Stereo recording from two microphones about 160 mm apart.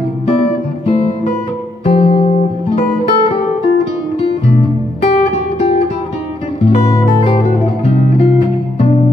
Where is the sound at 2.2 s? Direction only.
55° left (ahead or behind).